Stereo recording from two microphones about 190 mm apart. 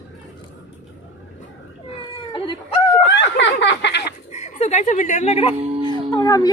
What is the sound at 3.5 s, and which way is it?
Frog, 65° left (ahead or behind).